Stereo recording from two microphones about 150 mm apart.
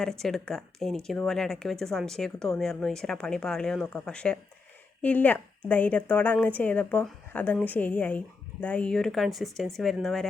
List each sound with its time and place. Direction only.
0.0 s a woman's voice: 5° left (ahead or behind)